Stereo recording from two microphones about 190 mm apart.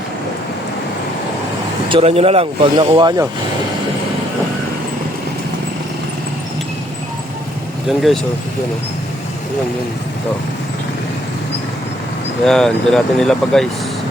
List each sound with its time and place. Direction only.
1.9 s speech: 30° right (ahead or behind)
7.9 s speech: centre (ahead or behind)
12.5 s speech: 5° left (ahead or behind)